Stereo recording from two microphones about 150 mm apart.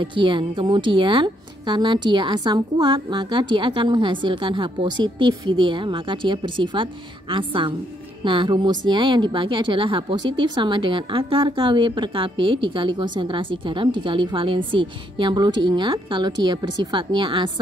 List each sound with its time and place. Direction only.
0.0 s speech: 35° right (ahead or behind)